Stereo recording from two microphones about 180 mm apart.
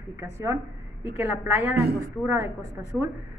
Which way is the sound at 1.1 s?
10° right (ahead or behind).